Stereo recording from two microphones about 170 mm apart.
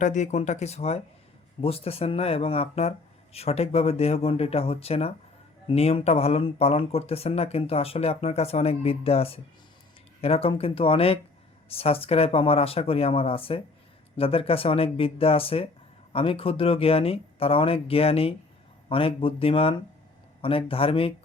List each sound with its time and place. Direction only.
0.0 s speech: 45° left (ahead or behind)